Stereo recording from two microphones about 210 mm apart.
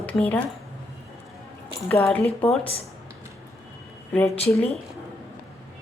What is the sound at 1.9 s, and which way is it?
Speech, 5° left (ahead or behind).